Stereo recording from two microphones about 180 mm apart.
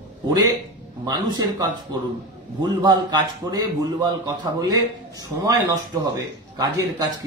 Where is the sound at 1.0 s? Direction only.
20° right (ahead or behind).